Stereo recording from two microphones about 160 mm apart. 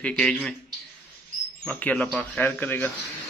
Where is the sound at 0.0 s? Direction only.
10° left (ahead or behind).